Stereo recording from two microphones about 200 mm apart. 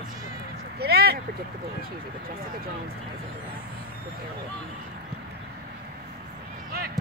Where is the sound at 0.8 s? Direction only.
50° right (ahead or behind).